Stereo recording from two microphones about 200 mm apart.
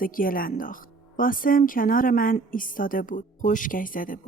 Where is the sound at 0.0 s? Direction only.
45° left (ahead or behind).